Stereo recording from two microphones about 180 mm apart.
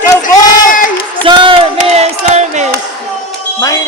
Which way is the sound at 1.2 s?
25° right (ahead or behind).